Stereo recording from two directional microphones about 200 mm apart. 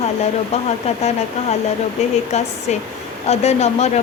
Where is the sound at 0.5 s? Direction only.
35° left (ahead or behind).